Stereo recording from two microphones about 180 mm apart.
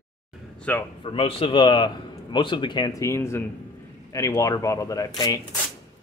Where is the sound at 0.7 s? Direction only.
10° left (ahead or behind).